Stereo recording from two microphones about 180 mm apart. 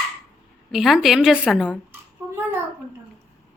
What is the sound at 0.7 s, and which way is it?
A woman's voice, centre (ahead or behind).